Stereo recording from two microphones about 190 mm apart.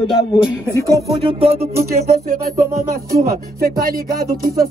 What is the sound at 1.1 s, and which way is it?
Music, 30° right (ahead or behind).